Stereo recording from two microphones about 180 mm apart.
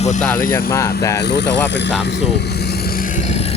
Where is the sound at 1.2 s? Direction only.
70° left (ahead or behind).